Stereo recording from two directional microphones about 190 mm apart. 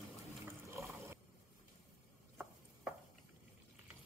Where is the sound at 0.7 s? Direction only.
15° right (ahead or behind).